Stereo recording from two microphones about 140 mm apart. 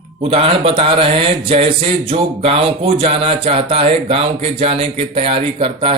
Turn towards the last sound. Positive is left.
turn(degrees=-40)  # may be behind; listen again after turning